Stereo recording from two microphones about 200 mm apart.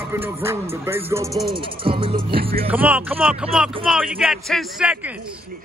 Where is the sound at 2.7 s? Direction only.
10° right (ahead or behind).